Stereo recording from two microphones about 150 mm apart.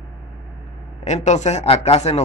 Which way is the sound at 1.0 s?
50° left (ahead or behind).